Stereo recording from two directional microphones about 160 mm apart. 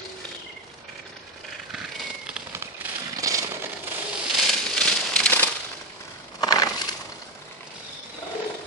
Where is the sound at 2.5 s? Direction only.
15° right (ahead or behind).